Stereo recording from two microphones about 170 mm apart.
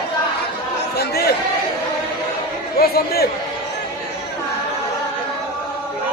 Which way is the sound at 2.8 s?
65° left (ahead or behind).